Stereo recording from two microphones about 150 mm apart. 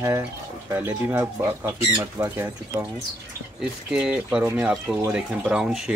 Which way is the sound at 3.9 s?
5° right (ahead or behind).